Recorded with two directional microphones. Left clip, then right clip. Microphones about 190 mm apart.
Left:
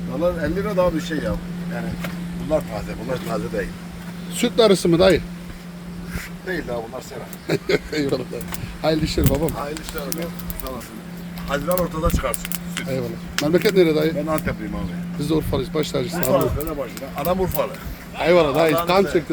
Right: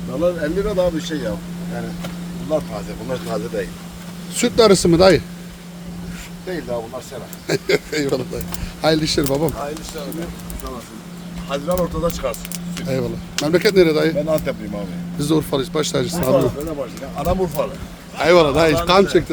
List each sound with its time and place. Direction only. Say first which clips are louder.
0.2 s speech: right 3 dB; 10° left (ahead or behind)
3.1 s speech: right 2 dB; 5° left (ahead or behind)
7.4 s speech: right 2 dB; 10° right (ahead or behind)
11.4 s speech: right 1 dB; centre (ahead or behind)
12.9 s speech: right 5 dB; 15° right (ahead or behind)
14.3 s speech: right 4 dB; 30° right (ahead or behind)
15.2 s speech: right 3 dB; 15° right (ahead or behind)
16.7 s speech: right 1 dB; 5° left (ahead or behind)
18.2 s speech: right 3 dB; 10° right (ahead or behind)